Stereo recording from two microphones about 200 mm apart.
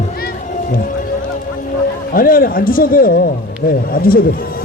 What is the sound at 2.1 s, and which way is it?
A man's voice, 45° left (ahead or behind).